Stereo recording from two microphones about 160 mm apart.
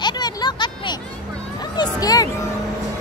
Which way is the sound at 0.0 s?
25° left (ahead or behind).